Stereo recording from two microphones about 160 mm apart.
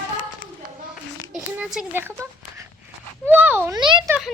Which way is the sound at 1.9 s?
15° right (ahead or behind).